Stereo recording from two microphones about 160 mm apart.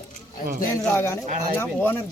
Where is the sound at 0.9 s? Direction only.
15° left (ahead or behind).